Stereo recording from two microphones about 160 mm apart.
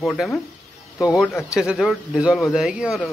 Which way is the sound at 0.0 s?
5° left (ahead or behind).